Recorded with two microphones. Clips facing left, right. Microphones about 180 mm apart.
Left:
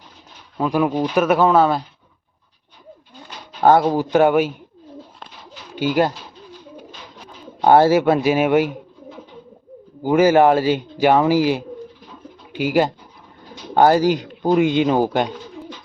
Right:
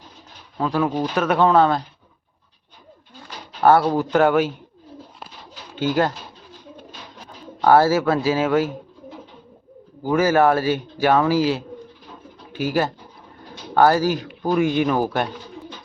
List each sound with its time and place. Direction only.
0.6 s speech: 10° left (ahead or behind)
3.6 s speech: 20° left (ahead or behind)
5.7 s speech: 10° left (ahead or behind)
7.6 s speech: 20° left (ahead or behind)
10.0 s speech: 20° left (ahead or behind)